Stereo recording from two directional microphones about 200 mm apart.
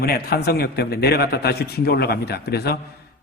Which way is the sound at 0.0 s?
50° left (ahead or behind).